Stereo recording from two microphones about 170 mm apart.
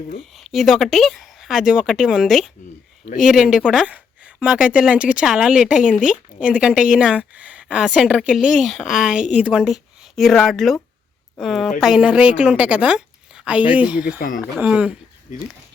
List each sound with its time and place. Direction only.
0.2 s a woman's voice: centre (ahead or behind)
14.2 s speech: 55° left (ahead or behind)
14.6 s a woman's voice: 5° right (ahead or behind)